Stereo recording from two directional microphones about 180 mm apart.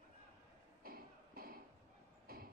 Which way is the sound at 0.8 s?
55° right (ahead or behind).